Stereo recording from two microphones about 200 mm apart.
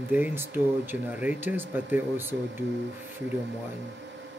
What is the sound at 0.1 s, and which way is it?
Speech, 10° right (ahead or behind).